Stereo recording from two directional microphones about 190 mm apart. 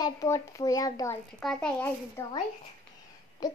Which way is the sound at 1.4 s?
Centre (ahead or behind).